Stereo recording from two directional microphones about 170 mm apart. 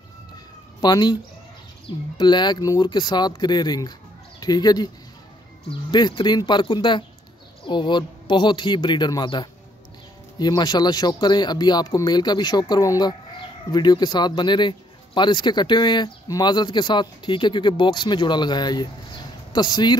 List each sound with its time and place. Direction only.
0.7 s a man's voice: 25° left (ahead or behind)